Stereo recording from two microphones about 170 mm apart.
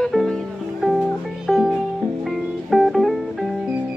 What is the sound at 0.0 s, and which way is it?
Music, centre (ahead or behind).